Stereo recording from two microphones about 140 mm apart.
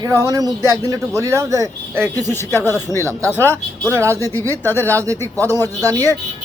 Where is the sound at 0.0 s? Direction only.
25° right (ahead or behind).